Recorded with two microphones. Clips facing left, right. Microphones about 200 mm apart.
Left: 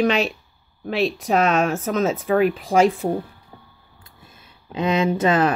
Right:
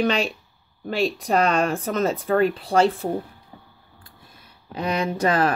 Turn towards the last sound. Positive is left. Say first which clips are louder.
# left 3 dB
turn(degrees=20)  # may be behind; listen again after turning